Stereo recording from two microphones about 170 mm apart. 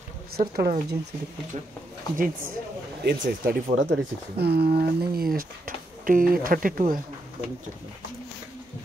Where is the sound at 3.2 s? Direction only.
60° right (ahead or behind).